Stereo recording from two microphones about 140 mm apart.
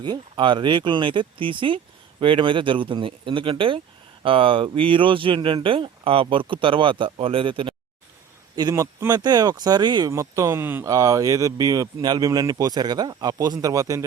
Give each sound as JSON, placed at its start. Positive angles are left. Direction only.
{"t": 0.0, "sound": "speech", "side_deg": -35}
{"t": 8.5, "sound": "speech", "side_deg": -25}
{"t": 10.1, "sound": "speech", "side_deg": -20}